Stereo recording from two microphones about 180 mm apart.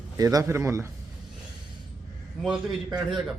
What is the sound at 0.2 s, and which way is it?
Speech, 20° right (ahead or behind).